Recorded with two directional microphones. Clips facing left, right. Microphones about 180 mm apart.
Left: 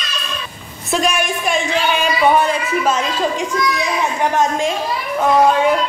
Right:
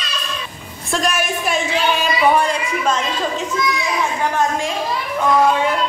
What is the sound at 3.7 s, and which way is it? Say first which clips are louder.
A child's voice: left 2 dB; 20° left (ahead or behind).